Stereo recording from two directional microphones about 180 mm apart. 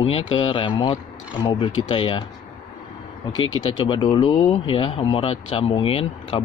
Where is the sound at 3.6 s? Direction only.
25° left (ahead or behind).